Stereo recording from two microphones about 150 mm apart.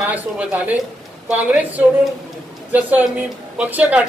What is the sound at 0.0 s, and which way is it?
A woman's voice, 10° right (ahead or behind).